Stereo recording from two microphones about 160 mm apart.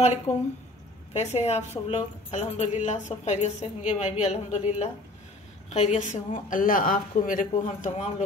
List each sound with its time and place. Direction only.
1.1 s a woman's voice: 40° left (ahead or behind)